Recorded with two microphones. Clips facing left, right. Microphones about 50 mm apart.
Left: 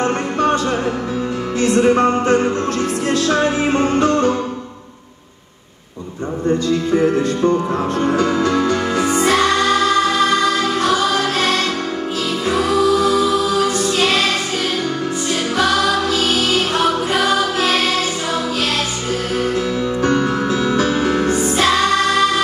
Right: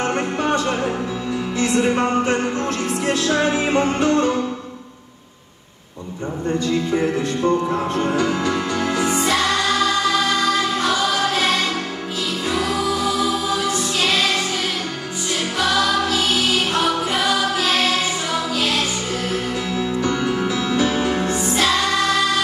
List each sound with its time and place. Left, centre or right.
0.0 s music: left
3.2 s speech: left
6.6 s speech: left
9.3 s music: left
12.4 s music: left
15.5 s music: left
19.5 s music: left